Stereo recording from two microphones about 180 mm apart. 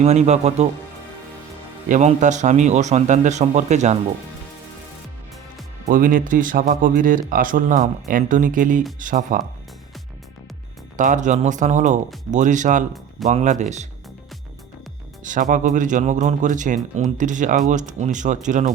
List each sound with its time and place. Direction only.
0.0 s a man's voice: 40° right (ahead or behind)
1.9 s a man's voice: 40° right (ahead or behind)
5.8 s speech: 50° right (ahead or behind)
10.9 s a man's voice: 45° right (ahead or behind)
15.2 s speech: 45° right (ahead or behind)